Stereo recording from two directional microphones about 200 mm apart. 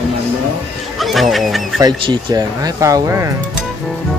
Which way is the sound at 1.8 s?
20° right (ahead or behind).